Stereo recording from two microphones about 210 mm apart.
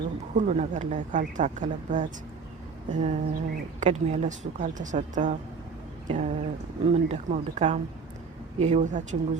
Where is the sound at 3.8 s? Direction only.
35° right (ahead or behind).